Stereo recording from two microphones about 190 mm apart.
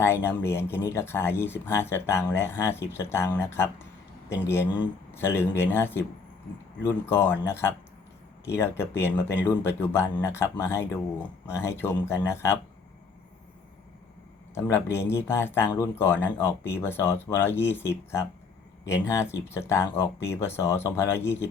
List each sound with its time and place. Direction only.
0.0 s speech: 10° left (ahead or behind)
7.0 s speech: 10° left (ahead or behind)
14.5 s speech: 15° left (ahead or behind)